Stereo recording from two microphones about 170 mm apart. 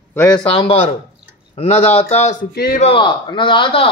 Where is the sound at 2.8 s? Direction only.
35° left (ahead or behind).